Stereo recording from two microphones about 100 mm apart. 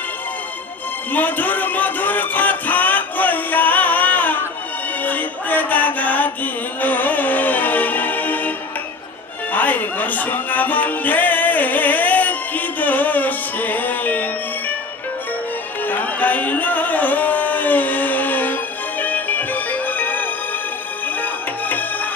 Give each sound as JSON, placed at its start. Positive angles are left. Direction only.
{"t": 1.1, "sound": "music", "side_deg": 15}
{"t": 15.8, "sound": "music", "side_deg": 20}